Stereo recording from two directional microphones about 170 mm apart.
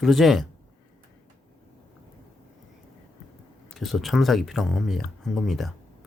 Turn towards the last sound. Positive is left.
turn(degrees=0)  # may be behind; listen again after turning